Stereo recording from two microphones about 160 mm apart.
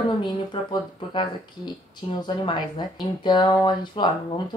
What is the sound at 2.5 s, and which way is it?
A woman's voice, 30° left (ahead or behind).